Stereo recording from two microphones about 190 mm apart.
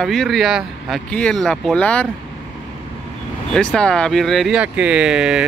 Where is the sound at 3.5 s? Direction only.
5° left (ahead or behind).